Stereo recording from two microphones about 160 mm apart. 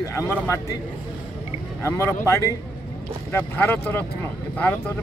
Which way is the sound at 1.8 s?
15° left (ahead or behind).